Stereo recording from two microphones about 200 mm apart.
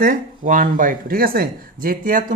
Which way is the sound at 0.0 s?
40° right (ahead or behind).